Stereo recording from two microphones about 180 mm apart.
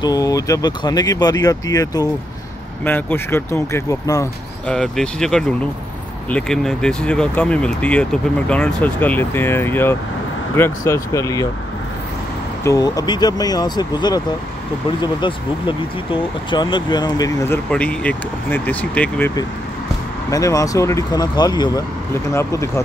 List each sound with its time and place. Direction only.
0.0 s speech: 20° left (ahead or behind)
4.6 s speech: 5° left (ahead or behind)
12.6 s speech: 20° left (ahead or behind)
17.6 s speech: 5° left (ahead or behind)